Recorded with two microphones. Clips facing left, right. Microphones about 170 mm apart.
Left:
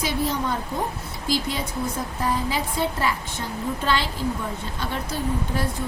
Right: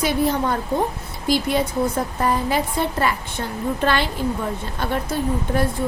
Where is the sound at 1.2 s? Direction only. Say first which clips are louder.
Right 6 dB; 60° right (ahead or behind).